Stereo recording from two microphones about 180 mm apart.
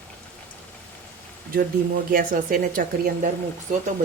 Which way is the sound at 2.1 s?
50° right (ahead or behind).